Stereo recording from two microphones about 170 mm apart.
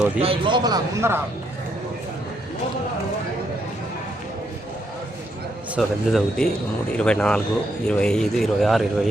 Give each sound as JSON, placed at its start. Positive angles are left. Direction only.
{"t": 0.2, "sound": "a man's voice", "side_deg": -30}
{"t": 5.7, "sound": "speech", "side_deg": 0}